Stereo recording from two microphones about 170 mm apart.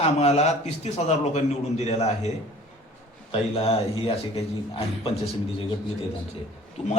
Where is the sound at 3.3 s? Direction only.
35° left (ahead or behind).